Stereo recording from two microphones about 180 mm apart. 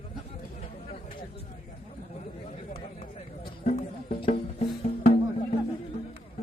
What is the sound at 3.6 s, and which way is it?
Music, 40° left (ahead or behind).